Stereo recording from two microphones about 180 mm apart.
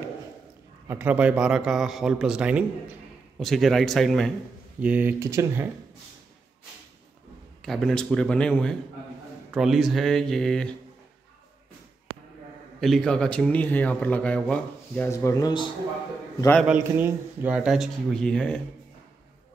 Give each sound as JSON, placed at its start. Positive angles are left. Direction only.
{"t": 0.8, "sound": "a man's voice", "side_deg": -10}
{"t": 7.6, "sound": "a man's voice", "side_deg": 0}
{"t": 12.1, "sound": "a sound", "side_deg": -80}
{"t": 12.8, "sound": "speech", "side_deg": 0}
{"t": 16.3, "sound": "a man's voice", "side_deg": 10}
{"t": 16.6, "sound": "a man's voice", "side_deg": -10}